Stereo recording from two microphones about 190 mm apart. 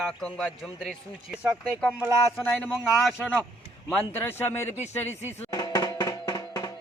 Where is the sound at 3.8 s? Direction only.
10° left (ahead or behind).